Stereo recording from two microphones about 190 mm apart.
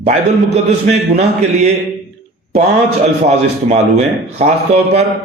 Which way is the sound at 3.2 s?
35° right (ahead or behind).